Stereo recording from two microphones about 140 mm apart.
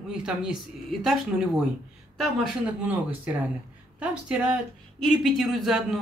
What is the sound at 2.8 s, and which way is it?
A man's voice, 10° right (ahead or behind).